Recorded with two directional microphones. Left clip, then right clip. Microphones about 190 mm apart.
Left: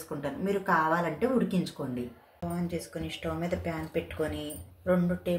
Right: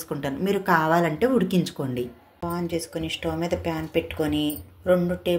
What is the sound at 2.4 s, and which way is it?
Speech, centre (ahead or behind).